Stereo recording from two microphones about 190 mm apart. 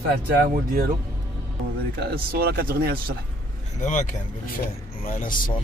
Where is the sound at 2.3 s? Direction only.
55° right (ahead or behind).